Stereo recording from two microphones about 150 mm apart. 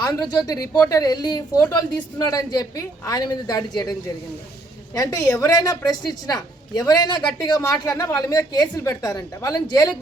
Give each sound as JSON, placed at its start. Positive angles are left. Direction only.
{"t": 0.0, "sound": "a woman's voice", "side_deg": 25}
{"t": 4.9, "sound": "a woman's voice", "side_deg": 25}